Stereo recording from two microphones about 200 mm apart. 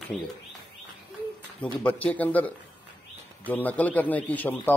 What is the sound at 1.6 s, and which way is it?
A man's voice, 10° left (ahead or behind).